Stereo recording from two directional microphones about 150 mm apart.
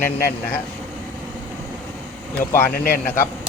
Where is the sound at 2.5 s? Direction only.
15° left (ahead or behind).